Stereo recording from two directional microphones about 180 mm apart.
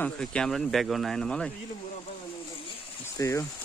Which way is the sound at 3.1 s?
15° left (ahead or behind).